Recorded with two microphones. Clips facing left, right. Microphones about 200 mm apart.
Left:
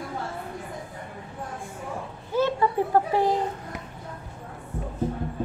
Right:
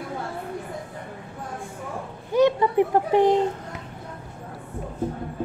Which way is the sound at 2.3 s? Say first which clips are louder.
Right 5 dB; 20° right (ahead or behind).